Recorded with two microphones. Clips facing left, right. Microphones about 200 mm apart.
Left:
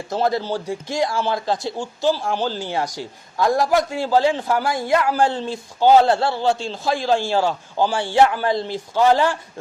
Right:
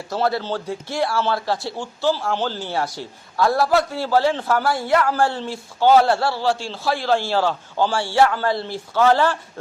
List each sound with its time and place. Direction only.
0.1 s speech: 15° left (ahead or behind)